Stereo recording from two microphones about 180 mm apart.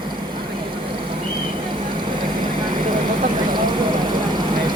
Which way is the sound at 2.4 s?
50° right (ahead or behind).